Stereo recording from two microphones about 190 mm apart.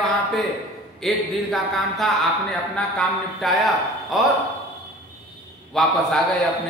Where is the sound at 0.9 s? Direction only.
Centre (ahead or behind).